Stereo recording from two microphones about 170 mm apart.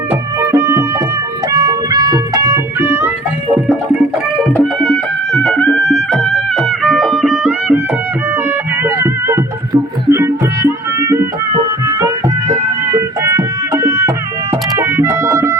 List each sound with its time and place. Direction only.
0.1 s music: 15° right (ahead or behind)
4.8 s music: centre (ahead or behind)
8.8 s music: 15° right (ahead or behind)
13.2 s music: 20° right (ahead or behind)